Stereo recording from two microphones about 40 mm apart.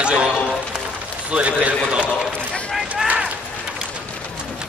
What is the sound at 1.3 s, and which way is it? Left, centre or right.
Speech, right.